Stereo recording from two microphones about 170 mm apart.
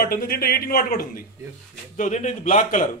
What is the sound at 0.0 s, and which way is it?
A man's voice, 60° left (ahead or behind).